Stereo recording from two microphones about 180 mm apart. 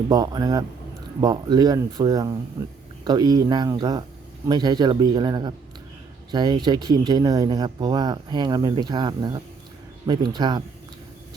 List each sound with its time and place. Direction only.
0.1 s speech: 20° right (ahead or behind)